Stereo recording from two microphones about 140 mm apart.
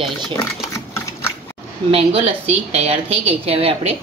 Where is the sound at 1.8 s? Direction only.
45° right (ahead or behind).